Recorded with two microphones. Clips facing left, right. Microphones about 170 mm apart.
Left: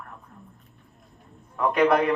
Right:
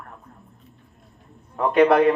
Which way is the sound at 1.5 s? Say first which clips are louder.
Right 4 dB; 30° right (ahead or behind).